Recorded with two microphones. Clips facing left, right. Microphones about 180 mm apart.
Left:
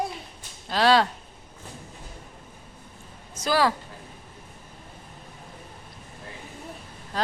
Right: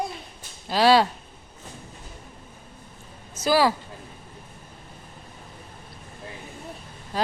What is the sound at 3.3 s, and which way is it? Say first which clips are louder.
Speech: right 3 dB; 5° right (ahead or behind).